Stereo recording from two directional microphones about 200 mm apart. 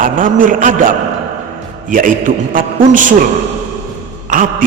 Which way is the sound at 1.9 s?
45° right (ahead or behind).